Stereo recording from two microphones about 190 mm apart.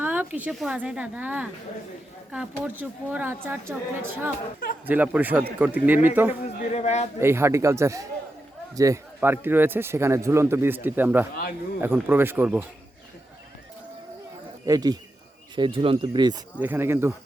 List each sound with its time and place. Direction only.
0.0 s speech: 10° right (ahead or behind)
6.4 s a man's voice: 35° left (ahead or behind)
7.2 s speech: 15° right (ahead or behind)
14.7 s speech: 20° right (ahead or behind)
16.6 s speech: 10° right (ahead or behind)